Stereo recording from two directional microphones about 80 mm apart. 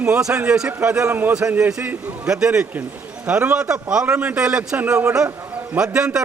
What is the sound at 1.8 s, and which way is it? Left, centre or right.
Speech, right.